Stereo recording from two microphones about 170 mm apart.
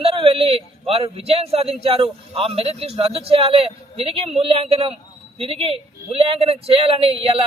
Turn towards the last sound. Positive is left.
turn(degrees=-35)  # may be behind; listen again after turning